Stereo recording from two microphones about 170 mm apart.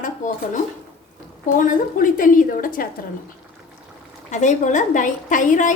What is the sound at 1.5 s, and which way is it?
A woman's voice, 50° left (ahead or behind).